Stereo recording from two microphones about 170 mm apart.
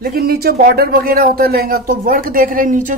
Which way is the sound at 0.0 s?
65° right (ahead or behind).